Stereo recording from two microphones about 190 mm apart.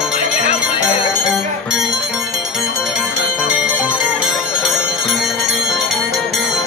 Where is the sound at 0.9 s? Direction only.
Centre (ahead or behind).